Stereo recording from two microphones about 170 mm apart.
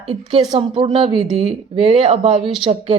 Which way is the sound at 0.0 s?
35° right (ahead or behind).